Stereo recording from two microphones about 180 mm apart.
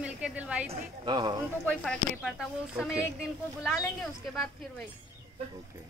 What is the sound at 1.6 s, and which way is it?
Speech, 5° left (ahead or behind).